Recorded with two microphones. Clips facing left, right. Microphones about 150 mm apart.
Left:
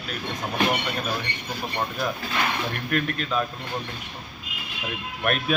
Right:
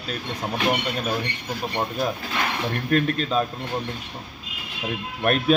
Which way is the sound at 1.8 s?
30° right (ahead or behind).